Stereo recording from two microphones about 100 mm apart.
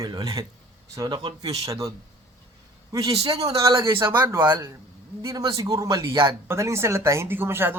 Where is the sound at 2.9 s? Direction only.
35° right (ahead or behind).